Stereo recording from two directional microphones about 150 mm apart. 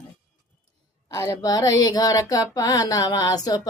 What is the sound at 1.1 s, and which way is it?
Child singing, 20° left (ahead or behind).